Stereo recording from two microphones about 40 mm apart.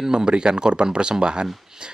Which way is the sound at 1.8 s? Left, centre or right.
Right.